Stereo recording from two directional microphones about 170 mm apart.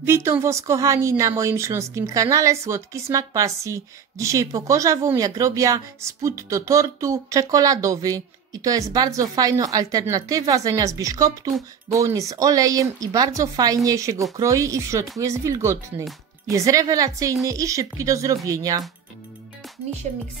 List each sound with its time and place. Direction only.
0.0 s a woman's voice: 15° right (ahead or behind)